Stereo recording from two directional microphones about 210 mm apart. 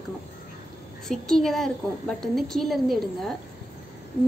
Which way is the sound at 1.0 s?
Centre (ahead or behind).